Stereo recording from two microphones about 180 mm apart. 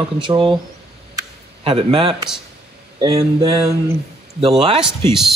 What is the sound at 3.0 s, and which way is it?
Speech, 20° right (ahead or behind).